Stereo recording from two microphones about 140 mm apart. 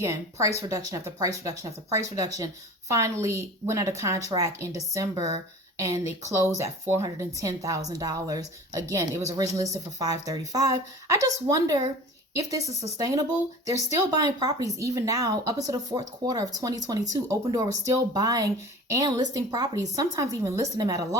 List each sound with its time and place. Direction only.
0.0 s speech: 20° right (ahead or behind)